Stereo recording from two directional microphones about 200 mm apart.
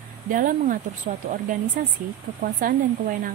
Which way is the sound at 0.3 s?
45° right (ahead or behind).